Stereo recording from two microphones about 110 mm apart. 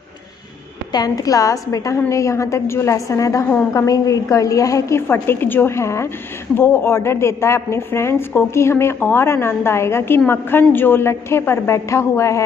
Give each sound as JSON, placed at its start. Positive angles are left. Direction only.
{"t": 0.9, "sound": "a woman's voice", "side_deg": 35}